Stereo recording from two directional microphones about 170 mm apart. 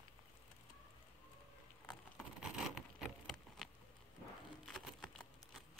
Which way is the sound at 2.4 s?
5° right (ahead or behind).